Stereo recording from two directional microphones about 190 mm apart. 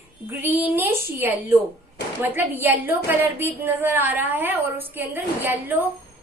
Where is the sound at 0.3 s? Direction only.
10° right (ahead or behind).